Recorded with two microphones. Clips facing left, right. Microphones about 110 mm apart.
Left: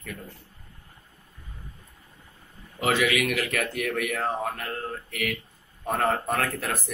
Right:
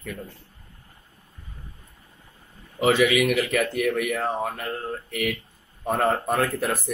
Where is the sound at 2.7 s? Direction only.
15° right (ahead or behind).